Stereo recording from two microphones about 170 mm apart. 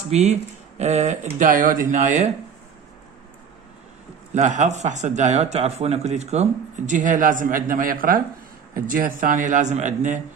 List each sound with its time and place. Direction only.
0.1 s speech: 40° right (ahead or behind)
1.4 s speech: 50° right (ahead or behind)
4.3 s speech: 45° right (ahead or behind)